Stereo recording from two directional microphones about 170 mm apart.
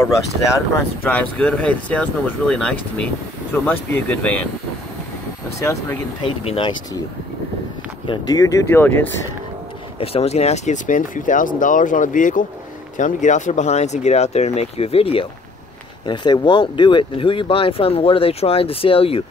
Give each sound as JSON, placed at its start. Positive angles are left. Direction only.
{"t": 0.0, "sound": "speech", "side_deg": 15}
{"t": 5.6, "sound": "speech", "side_deg": 15}
{"t": 6.2, "sound": "speech", "side_deg": 30}
{"t": 8.1, "sound": "speech", "side_deg": 20}
{"t": 9.9, "sound": "speech", "side_deg": 35}